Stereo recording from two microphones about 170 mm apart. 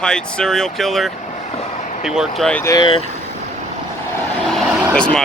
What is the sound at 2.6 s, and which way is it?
Speech, 20° left (ahead or behind).